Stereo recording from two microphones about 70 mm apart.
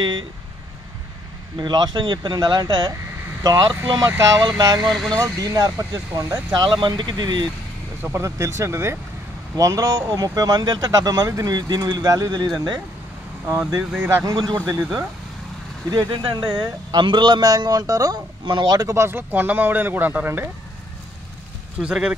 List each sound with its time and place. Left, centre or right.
1.6 s speech: right
3.4 s speech: right
4.8 s speech: centre
5.2 s speech: right
6.5 s speech: right
8.1 s speech: right
9.6 s speech: right
13.5 s speech: right
14.2 s a man's voice: right
15.9 s a man's voice: right
18.9 s speech: right
21.7 s speech: centre